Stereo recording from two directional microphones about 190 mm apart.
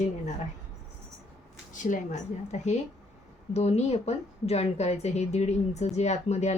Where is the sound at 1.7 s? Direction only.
40° left (ahead or behind).